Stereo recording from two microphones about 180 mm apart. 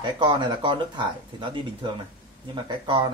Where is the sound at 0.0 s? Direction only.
25° right (ahead or behind).